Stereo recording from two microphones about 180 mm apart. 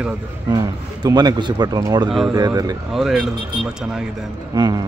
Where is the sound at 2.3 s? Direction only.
20° right (ahead or behind).